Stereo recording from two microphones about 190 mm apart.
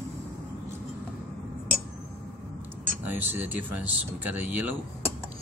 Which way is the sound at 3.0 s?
10° right (ahead or behind).